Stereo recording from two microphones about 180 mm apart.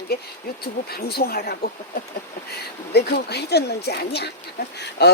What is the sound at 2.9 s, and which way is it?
Speech, 65° left (ahead or behind).